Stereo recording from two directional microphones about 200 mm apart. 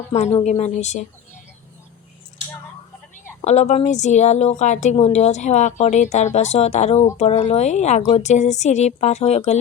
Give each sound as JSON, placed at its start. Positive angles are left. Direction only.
{"t": 0.1, "sound": "a woman's voice", "side_deg": 35}
{"t": 3.4, "sound": "a woman's voice", "side_deg": 35}